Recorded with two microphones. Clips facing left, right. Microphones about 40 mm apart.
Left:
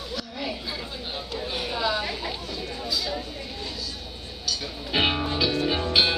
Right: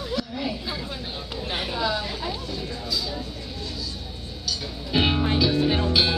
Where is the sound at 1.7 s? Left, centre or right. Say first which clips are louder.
Left 1 dB; centre.